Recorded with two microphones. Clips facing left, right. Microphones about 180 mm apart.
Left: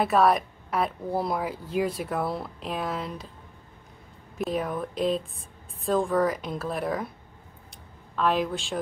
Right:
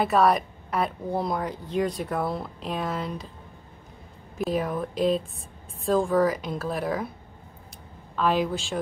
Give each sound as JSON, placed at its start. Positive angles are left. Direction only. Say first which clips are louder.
{"t": 0.0, "sound": "speech", "louder": "even", "side_deg": 0}
{"t": 4.4, "sound": "speech", "louder": "right 2 dB", "side_deg": 0}
{"t": 8.2, "sound": "speech", "louder": "right 1 dB", "side_deg": 0}